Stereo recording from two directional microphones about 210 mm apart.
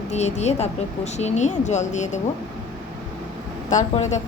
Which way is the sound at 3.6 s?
35° left (ahead or behind).